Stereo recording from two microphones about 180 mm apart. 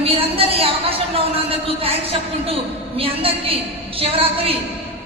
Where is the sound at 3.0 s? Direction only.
30° right (ahead or behind).